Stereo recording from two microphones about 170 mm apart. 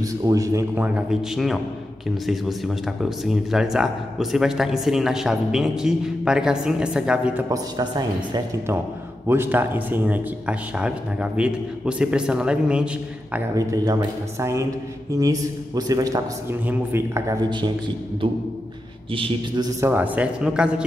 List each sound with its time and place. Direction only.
0.0 s speech: 20° right (ahead or behind)
7.4 s a man's voice: 20° right (ahead or behind)
9.3 s speech: 10° right (ahead or behind)
13.6 s a man's voice: 20° right (ahead or behind)
17.5 s a man's voice: 25° right (ahead or behind)
19.9 s speech: 10° right (ahead or behind)